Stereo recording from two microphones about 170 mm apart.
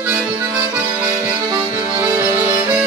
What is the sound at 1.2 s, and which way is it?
Music, 20° right (ahead or behind).